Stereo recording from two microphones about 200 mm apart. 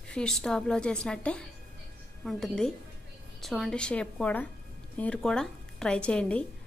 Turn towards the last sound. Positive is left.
turn(degrees=5)  # may be behind; listen again after turning